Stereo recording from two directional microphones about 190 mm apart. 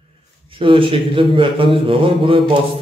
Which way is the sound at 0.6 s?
30° right (ahead or behind).